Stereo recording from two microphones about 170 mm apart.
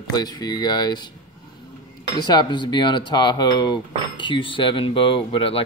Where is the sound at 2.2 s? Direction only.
25° left (ahead or behind).